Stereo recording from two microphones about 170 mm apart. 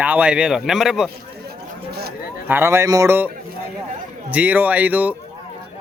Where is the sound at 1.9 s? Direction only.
70° right (ahead or behind).